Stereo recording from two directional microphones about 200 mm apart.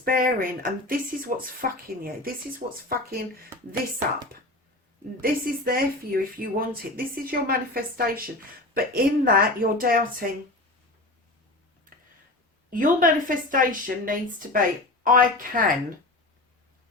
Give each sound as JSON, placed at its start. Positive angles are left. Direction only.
{"t": 0.0, "sound": "a woman's voice", "side_deg": -45}
{"t": 2.6, "sound": "speech", "side_deg": -35}
{"t": 3.1, "sound": "a woman's voice", "side_deg": -45}
{"t": 5.2, "sound": "a woman's voice", "side_deg": -50}
{"t": 12.7, "sound": "a woman's voice", "side_deg": -40}